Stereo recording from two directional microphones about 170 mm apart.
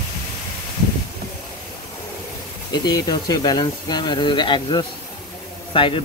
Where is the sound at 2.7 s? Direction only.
25° left (ahead or behind).